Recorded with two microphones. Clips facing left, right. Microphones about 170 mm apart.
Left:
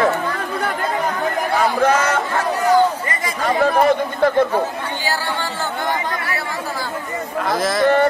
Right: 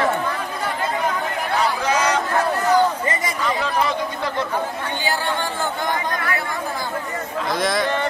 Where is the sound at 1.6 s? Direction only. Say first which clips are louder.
Left 4 dB; 55° left (ahead or behind).